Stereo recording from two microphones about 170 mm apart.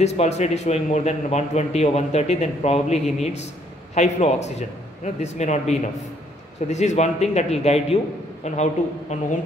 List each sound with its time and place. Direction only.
0.0 s a man's voice: 40° left (ahead or behind)